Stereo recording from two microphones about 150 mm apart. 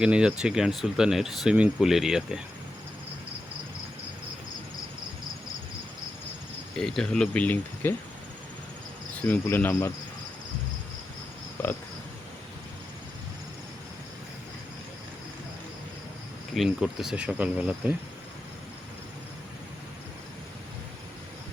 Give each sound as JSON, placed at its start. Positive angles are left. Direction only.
{"t": 0.0, "sound": "speech", "side_deg": -5}
{"t": 6.7, "sound": "speech", "side_deg": 5}
{"t": 9.2, "sound": "insect", "side_deg": 10}
{"t": 16.6, "sound": "speech", "side_deg": -5}